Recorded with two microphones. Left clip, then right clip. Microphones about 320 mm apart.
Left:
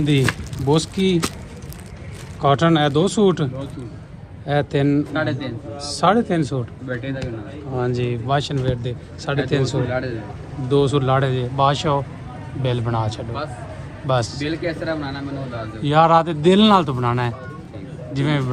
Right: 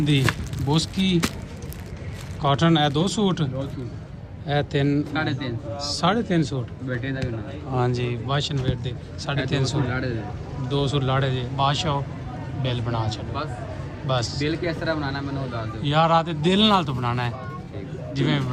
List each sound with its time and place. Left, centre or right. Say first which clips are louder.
0.0 s a man's voice: left 3 dB; centre
2.4 s a man's voice: left 4 dB; centre
7.8 s speech: left 3 dB; right
8.3 s a man's voice: left 6 dB; centre